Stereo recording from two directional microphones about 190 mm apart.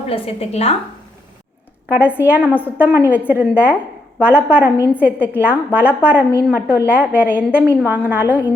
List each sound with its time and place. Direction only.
0.1 s a woman's voice: 30° left (ahead or behind)
1.9 s a woman's voice: 10° right (ahead or behind)